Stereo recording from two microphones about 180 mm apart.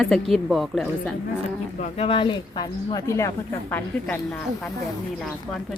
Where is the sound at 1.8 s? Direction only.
30° left (ahead or behind); by 5.6 s centre (ahead or behind).